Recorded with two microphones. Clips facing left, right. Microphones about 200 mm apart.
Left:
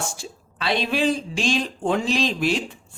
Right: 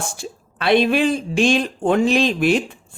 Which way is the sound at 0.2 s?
55° right (ahead or behind).